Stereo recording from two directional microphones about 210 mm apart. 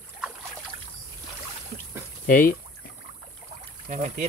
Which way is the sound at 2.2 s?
40° left (ahead or behind).